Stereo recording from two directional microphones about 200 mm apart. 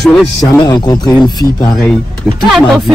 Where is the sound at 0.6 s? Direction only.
20° left (ahead or behind).